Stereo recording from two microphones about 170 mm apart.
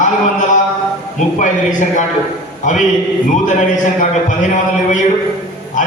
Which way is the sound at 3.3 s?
45° left (ahead or behind).